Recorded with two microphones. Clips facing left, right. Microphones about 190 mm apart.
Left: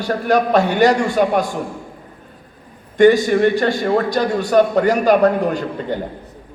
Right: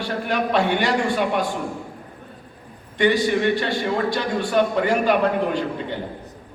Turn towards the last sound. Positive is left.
turn(degrees=45)  # may be behind; listen again after turning